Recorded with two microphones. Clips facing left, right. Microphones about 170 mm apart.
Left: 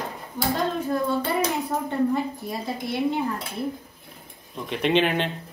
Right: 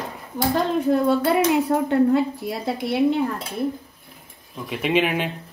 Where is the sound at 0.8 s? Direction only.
70° right (ahead or behind).